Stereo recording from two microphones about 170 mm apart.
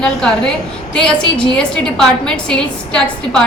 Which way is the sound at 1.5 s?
5° left (ahead or behind).